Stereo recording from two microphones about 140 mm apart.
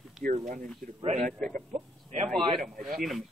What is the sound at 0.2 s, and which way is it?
Speech, 65° right (ahead or behind).